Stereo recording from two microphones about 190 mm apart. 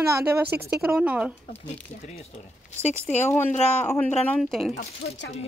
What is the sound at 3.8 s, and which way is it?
Speech, 10° left (ahead or behind).